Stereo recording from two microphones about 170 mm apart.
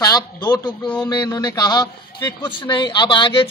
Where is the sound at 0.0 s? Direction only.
20° left (ahead or behind).